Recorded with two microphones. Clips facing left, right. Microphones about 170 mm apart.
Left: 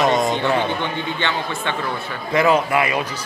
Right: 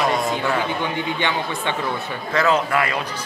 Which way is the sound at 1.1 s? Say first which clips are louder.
Even; 15° right (ahead or behind).